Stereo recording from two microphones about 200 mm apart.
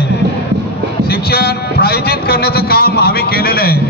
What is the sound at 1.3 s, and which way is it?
A man's voice, 50° left (ahead or behind).